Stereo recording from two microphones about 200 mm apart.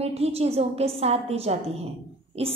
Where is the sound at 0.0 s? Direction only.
30° right (ahead or behind).